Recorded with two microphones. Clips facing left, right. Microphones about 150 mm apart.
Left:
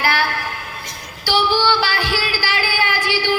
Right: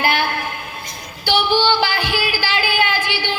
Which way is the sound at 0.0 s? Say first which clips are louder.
Right 1 dB; 20° right (ahead or behind).